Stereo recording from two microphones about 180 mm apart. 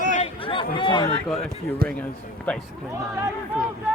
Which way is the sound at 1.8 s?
55° right (ahead or behind).